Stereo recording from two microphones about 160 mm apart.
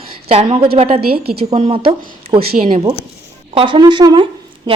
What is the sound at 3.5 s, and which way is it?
Speech, 30° right (ahead or behind).